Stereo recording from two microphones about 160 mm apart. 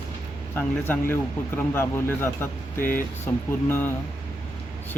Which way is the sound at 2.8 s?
60° left (ahead or behind).